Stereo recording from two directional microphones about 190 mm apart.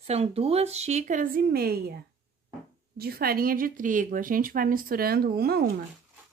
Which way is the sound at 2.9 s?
55° right (ahead or behind).